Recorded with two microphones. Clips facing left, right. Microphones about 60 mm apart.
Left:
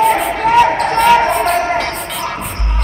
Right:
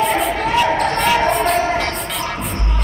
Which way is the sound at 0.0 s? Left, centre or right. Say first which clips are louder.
Left 4 dB; centre.